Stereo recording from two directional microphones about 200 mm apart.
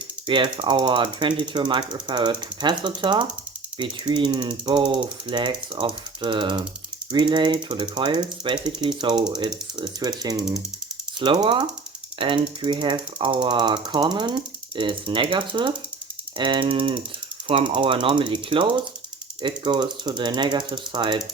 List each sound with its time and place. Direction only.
0.3 s speech: 25° right (ahead or behind)